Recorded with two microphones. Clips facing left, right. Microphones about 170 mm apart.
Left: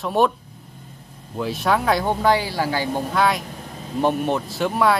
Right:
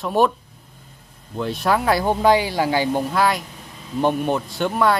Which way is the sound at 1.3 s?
Centre (ahead or behind).